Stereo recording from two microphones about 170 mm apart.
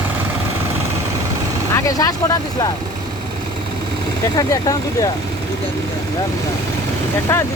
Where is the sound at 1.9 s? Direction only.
20° left (ahead or behind).